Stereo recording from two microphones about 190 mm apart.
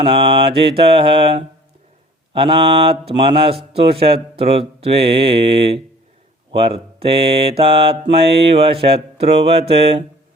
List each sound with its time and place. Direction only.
0.0 s mantra: 30° right (ahead or behind)
8.5 s speech: 30° right (ahead or behind)